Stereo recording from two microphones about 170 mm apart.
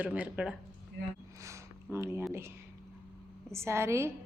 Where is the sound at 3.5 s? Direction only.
15° right (ahead or behind).